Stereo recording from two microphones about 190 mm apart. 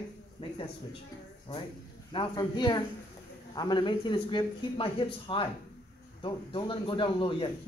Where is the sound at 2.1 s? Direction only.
20° left (ahead or behind).